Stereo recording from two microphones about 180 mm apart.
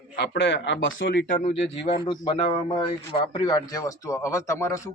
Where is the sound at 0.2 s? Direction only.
75° left (ahead or behind).